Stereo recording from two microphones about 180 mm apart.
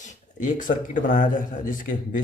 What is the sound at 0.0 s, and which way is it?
Speech, 45° left (ahead or behind).